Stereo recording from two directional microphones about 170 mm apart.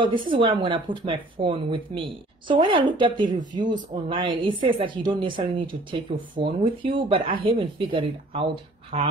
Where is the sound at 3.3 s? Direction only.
50° right (ahead or behind).